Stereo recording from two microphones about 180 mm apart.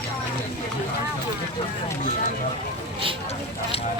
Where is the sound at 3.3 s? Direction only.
35° left (ahead or behind).